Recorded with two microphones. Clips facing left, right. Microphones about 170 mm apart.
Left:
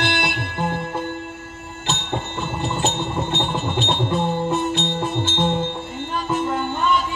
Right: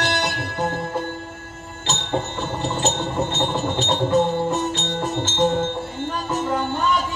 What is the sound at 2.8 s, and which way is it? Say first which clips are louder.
Music: right 2 dB; 40° right (ahead or behind).